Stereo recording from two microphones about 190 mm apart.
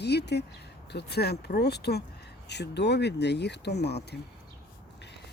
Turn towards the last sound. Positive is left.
turn(degrees=60)  # may be behind; listen again after turning